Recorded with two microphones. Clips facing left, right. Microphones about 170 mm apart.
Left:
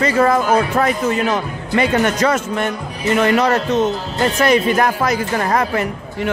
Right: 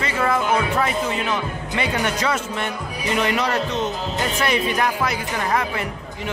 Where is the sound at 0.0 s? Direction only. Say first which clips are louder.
Left 7 dB; 40° left (ahead or behind).